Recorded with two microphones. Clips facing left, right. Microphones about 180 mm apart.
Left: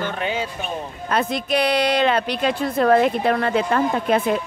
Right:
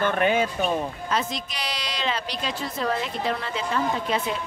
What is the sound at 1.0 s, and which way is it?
Speech, 55° left (ahead or behind).